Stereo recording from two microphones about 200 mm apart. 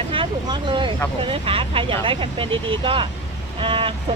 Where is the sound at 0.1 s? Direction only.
25° right (ahead or behind).